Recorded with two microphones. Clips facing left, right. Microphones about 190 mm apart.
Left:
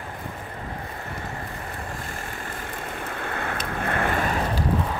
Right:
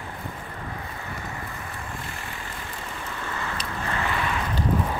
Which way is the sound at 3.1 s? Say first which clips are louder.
Left 2 dB; 60° left (ahead or behind).